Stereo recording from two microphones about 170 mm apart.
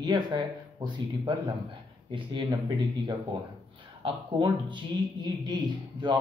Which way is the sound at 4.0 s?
30° right (ahead or behind).